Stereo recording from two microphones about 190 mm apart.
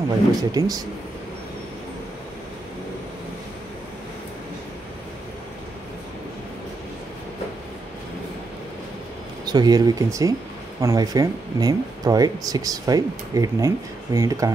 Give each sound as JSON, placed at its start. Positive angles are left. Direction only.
{"t": 0.4, "sound": "speech", "side_deg": -20}
{"t": 9.5, "sound": "speech", "side_deg": -20}